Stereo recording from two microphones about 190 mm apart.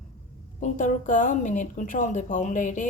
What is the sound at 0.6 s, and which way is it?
A woman's voice, 40° left (ahead or behind).